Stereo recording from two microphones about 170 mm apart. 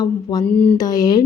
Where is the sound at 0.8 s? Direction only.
20° left (ahead or behind).